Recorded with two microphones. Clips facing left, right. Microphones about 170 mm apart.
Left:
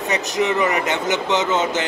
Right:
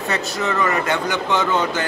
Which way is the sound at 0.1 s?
20° left (ahead or behind).